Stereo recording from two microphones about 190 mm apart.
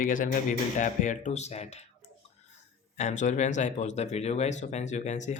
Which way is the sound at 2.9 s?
40° left (ahead or behind).